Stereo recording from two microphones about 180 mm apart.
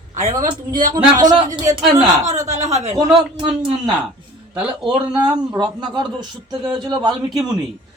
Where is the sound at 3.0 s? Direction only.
25° right (ahead or behind).